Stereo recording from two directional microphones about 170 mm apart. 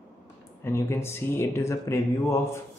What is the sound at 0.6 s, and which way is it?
Speech, 15° left (ahead or behind).